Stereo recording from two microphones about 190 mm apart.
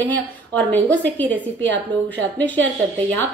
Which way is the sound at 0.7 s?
10° left (ahead or behind).